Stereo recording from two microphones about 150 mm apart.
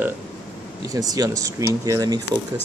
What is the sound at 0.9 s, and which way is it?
Speech, 25° right (ahead or behind).